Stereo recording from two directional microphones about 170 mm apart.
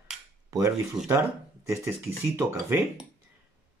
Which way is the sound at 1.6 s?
15° right (ahead or behind).